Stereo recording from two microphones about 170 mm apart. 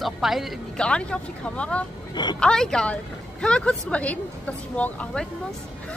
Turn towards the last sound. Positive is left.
turn(degrees=5)  # may be behind; listen again after turning